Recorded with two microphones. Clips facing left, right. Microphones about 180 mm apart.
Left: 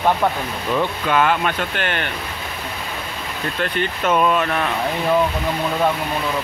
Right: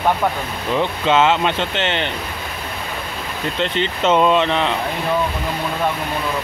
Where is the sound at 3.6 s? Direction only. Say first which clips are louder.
Right 2 dB; 20° right (ahead or behind).